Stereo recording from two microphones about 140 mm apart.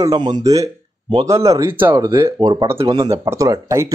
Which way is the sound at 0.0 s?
30° right (ahead or behind).